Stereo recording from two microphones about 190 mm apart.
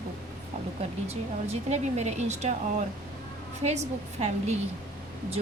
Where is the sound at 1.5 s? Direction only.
35° right (ahead or behind).